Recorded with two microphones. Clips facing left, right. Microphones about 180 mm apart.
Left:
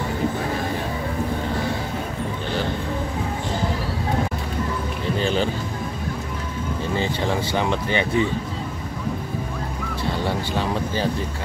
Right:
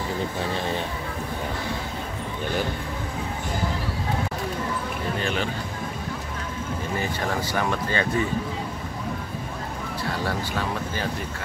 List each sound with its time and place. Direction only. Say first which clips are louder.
5.2 s music: left 7 dB; 30° left (ahead or behind)
7.0 s speech: left 4 dB; 25° left (ahead or behind)
10.2 s speech: left 4 dB; 25° left (ahead or behind)